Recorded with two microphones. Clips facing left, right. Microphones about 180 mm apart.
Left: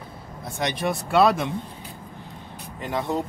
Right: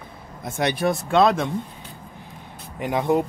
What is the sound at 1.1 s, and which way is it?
Speech, 5° left (ahead or behind).